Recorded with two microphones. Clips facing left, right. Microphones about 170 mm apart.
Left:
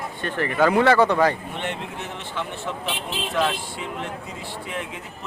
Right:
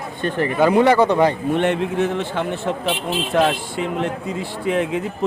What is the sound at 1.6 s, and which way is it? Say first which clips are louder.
A man's voice: right 12 dB; 75° right (ahead or behind).